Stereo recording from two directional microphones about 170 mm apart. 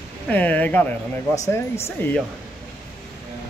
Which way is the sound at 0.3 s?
10° left (ahead or behind).